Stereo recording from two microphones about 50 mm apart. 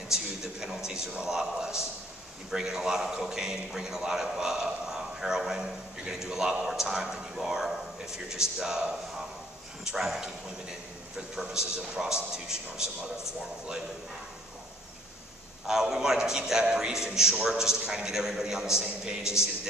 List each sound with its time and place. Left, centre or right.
0.1 s a sound: centre
2.5 s a man's voice: centre
9.8 s a man's voice: centre
15.6 s a man's voice: centre